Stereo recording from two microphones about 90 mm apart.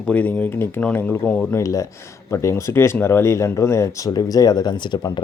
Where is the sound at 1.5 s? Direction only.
35° left (ahead or behind).